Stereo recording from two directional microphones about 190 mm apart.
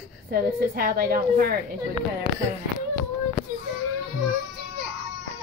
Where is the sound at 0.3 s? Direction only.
50° right (ahead or behind).